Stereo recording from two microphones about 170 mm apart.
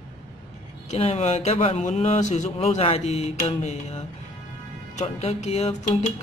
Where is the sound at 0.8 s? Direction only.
40° left (ahead or behind).